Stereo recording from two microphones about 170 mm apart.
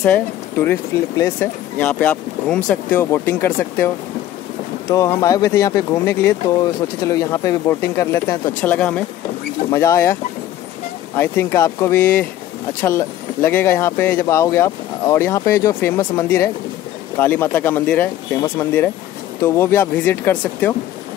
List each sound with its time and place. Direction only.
0.0 s speech: 10° left (ahead or behind)
9.7 s speech: 20° left (ahead or behind)
11.1 s speech: 15° left (ahead or behind)